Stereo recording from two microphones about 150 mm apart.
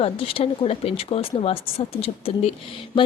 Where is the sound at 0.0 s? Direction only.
40° left (ahead or behind).